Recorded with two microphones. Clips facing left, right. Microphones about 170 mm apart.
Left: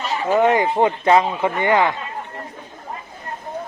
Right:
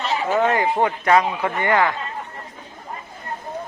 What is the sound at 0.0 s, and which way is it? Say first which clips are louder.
Speech: left 3 dB; 15° left (ahead or behind).